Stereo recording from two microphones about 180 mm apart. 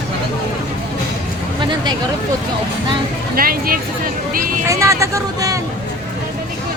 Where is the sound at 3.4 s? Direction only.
55° right (ahead or behind).